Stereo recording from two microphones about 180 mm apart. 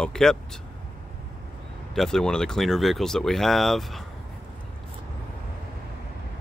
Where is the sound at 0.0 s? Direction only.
5° left (ahead or behind).